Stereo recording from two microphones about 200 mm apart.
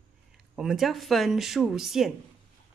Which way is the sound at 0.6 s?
Centre (ahead or behind).